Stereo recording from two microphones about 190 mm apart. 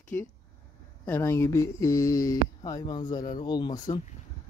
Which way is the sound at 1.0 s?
15° left (ahead or behind).